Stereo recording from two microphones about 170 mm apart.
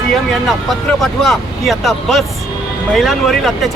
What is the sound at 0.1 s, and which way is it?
Speech, centre (ahead or behind).